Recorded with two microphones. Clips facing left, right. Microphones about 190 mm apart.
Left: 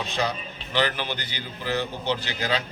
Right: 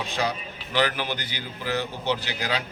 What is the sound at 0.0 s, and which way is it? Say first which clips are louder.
A man's voice: even; 10° right (ahead or behind).